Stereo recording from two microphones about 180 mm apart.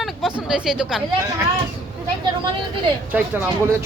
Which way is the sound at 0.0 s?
Centre (ahead or behind).